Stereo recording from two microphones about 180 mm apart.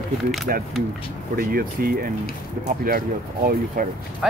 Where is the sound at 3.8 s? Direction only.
50° right (ahead or behind).